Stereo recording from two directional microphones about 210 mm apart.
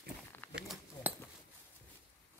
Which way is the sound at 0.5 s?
5° right (ahead or behind).